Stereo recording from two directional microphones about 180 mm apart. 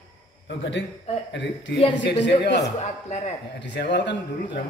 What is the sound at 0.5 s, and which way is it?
Speech, 90° left.